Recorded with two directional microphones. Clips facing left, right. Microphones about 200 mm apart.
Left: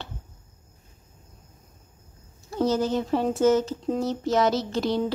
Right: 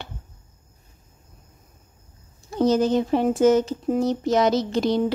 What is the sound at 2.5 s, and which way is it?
Speech, 15° right (ahead or behind).